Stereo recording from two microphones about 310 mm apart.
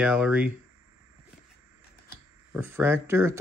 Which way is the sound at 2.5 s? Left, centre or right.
Centre.